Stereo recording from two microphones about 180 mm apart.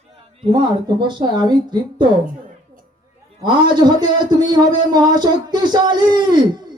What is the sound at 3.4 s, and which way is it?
A man's voice, 25° right (ahead or behind).